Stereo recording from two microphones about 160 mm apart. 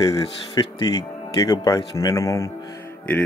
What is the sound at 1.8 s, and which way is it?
Speech, 20° left (ahead or behind).